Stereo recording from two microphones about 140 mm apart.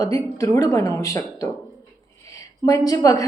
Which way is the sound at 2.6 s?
25° left (ahead or behind).